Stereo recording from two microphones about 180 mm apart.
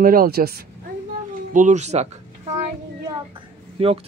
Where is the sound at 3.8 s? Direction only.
30° right (ahead or behind).